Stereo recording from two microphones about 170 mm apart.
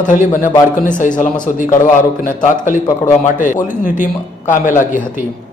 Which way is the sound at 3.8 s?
50° left (ahead or behind).